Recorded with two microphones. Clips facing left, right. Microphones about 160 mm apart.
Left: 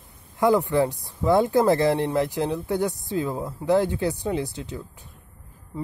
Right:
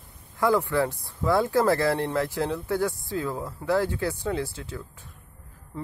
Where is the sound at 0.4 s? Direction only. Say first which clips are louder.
Left 3 dB; 20° left (ahead or behind).